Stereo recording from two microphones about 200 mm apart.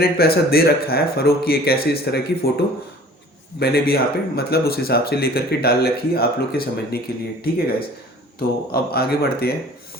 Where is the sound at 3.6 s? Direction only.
50° left (ahead or behind).